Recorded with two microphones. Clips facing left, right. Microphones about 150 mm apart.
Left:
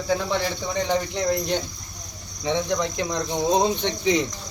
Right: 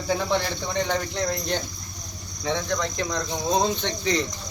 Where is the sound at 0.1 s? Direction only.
Centre (ahead or behind).